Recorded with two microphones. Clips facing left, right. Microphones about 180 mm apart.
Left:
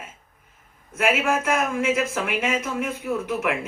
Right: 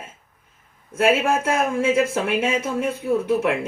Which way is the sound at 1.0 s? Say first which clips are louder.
Right 3 dB; 30° right (ahead or behind).